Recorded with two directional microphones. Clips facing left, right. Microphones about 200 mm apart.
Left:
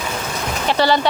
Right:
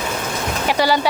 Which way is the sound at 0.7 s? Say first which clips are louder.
Left 1 dB; 10° right (ahead or behind).